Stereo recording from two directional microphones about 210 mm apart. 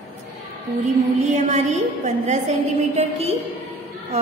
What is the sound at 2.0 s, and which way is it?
A woman's voice, 35° right (ahead or behind).